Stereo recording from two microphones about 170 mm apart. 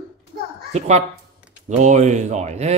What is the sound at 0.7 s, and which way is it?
A woman's voice, 40° right (ahead or behind).